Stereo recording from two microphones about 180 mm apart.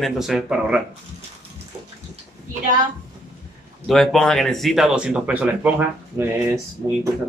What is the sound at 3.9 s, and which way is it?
Speech, centre (ahead or behind).